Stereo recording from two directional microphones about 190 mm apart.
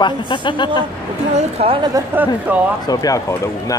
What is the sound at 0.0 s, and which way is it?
Speech, 25° left (ahead or behind).